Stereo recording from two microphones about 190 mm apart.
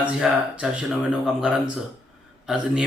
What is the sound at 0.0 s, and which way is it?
Speech, 5° right (ahead or behind).